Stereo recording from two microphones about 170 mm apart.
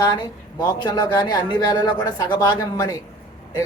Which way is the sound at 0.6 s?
20° left (ahead or behind).